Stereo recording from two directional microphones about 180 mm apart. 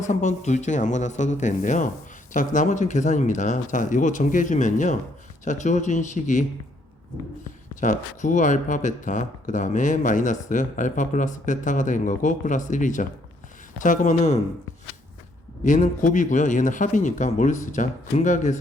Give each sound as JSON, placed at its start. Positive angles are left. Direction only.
{"t": 0.0, "sound": "speech", "side_deg": 40}
{"t": 7.8, "sound": "speech", "side_deg": 45}
{"t": 15.6, "sound": "speech", "side_deg": 45}